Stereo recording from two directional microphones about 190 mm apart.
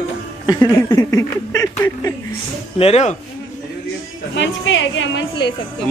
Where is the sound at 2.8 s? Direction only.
35° left (ahead or behind).